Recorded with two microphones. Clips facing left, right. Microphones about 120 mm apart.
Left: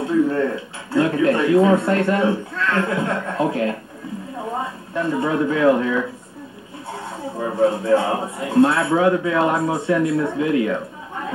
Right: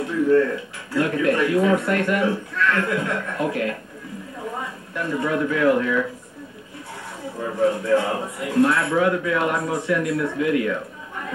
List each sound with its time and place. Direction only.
0.0 s a man's voice: 30° left (ahead or behind)
4.9 s a man's voice: 30° left (ahead or behind)
7.4 s a man's voice: 25° left (ahead or behind)